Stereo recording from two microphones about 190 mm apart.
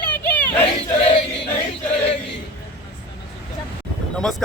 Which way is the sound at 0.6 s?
30° left (ahead or behind).